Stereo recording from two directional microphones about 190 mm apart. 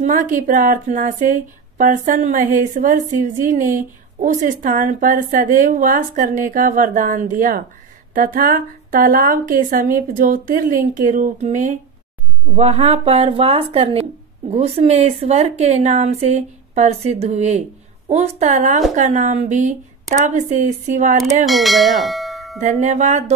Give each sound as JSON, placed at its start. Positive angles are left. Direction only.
{"t": 0.0, "sound": "a woman's voice", "side_deg": -40}
{"t": 21.5, "sound": "speech", "side_deg": 0}
{"t": 22.6, "sound": "a woman's voice", "side_deg": -40}